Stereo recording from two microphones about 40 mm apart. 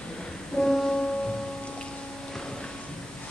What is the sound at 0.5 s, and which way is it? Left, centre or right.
Music, centre.